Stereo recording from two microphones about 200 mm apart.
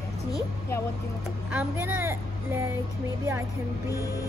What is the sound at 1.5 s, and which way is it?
Speech, 10° right (ahead or behind).